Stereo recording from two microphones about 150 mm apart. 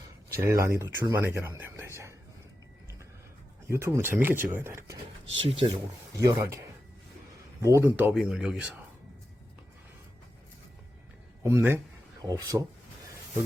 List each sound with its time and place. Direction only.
0.3 s speech: 15° right (ahead or behind)
3.7 s speech: 20° right (ahead or behind)
5.5 s speech: 35° right (ahead or behind)
6.1 s speech: 20° right (ahead or behind)
7.6 s speech: 15° right (ahead or behind)
11.4 s speech: 15° right (ahead or behind)